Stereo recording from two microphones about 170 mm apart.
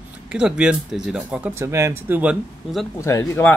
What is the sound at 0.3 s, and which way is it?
Speech, 5° right (ahead or behind).